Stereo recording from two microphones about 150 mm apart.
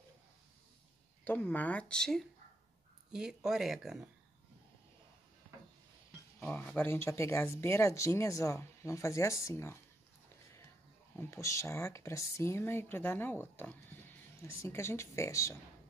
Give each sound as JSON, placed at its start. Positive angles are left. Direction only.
{"t": 1.2, "sound": "speech", "side_deg": 10}
{"t": 6.4, "sound": "speech", "side_deg": 10}
{"t": 11.1, "sound": "speech", "side_deg": 20}